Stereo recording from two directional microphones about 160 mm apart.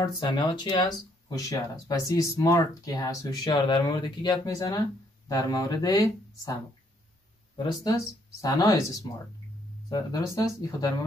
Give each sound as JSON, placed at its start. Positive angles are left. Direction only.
{"t": 0.0, "sound": "speech", "side_deg": 30}